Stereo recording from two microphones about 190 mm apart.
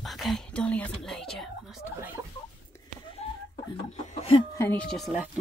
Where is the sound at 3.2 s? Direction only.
30° left (ahead or behind).